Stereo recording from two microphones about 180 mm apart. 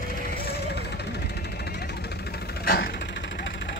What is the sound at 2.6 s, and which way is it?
Vehicle, 60° left (ahead or behind).